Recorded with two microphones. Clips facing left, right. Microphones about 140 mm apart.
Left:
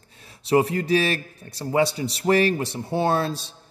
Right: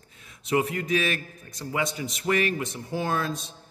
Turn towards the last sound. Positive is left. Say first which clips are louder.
# left 5 dB
turn(degrees=30)  # may be behind; listen again after turning